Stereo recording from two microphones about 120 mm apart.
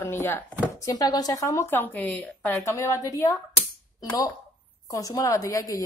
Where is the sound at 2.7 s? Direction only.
25° left (ahead or behind).